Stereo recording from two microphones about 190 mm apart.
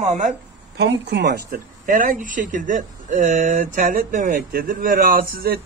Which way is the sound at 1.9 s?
40° right (ahead or behind).